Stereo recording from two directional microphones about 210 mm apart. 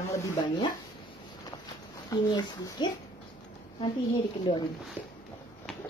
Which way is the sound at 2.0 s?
20° left (ahead or behind).